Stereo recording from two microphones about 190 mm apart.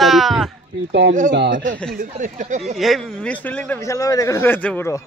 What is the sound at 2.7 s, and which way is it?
Speech, centre (ahead or behind).